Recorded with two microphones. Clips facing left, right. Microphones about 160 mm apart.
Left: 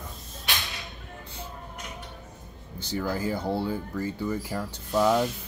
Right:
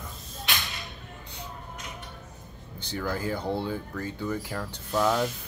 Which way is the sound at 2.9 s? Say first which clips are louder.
Left 2 dB; 10° left (ahead or behind).